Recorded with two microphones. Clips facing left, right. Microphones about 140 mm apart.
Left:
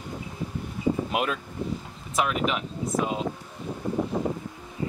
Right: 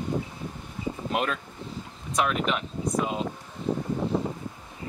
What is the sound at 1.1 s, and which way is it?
Speech, 5° left (ahead or behind).